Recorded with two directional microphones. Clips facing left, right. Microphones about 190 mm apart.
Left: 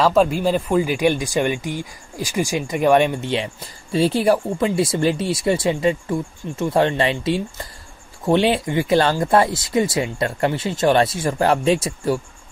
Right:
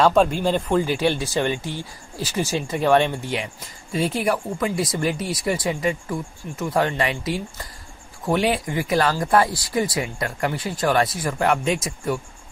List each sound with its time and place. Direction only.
0.0 s speech: centre (ahead or behind)
3.9 s speech: 30° left (ahead or behind)